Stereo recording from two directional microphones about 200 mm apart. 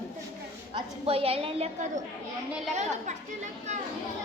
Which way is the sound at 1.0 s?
30° right (ahead or behind).